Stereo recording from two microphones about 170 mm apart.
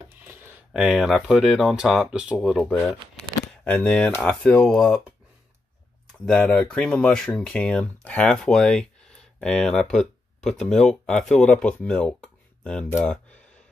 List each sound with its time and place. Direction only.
0.2 s speech: 15° right (ahead or behind)
3.6 s speech: 10° left (ahead or behind)
6.2 s speech: 5° left (ahead or behind)